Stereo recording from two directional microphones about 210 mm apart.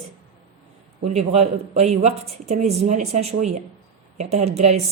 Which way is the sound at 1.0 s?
30° right (ahead or behind).